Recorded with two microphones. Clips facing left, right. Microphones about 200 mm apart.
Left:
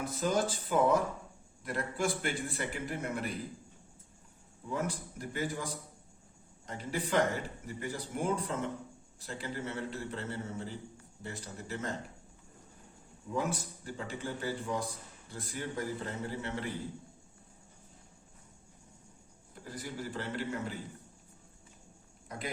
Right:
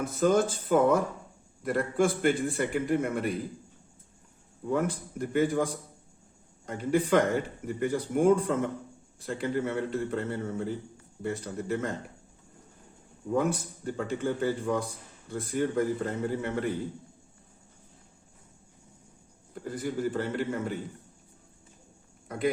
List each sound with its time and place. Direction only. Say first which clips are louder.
0.0 s a man's voice: right 7 dB; 50° right (ahead or behind)
4.7 s speech: right 7 dB; 55° right (ahead or behind)
6.7 s speech: right 10 dB; 55° right (ahead or behind)
13.3 s speech: right 7 dB; 55° right (ahead or behind)
19.7 s speech: right 9 dB; 55° right (ahead or behind)